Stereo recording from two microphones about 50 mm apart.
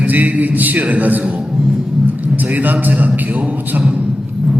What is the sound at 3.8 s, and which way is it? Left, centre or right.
Speech, right.